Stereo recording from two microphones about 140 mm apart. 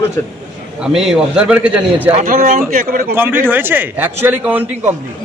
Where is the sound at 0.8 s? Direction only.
5° right (ahead or behind).